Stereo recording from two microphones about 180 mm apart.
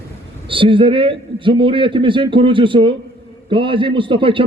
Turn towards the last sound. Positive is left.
turn(degrees=-30)  # may be behind; listen again after turning